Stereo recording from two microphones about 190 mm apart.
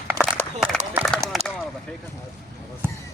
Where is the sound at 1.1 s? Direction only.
5° left (ahead or behind).